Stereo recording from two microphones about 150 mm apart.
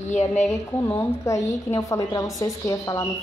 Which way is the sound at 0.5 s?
15° left (ahead or behind).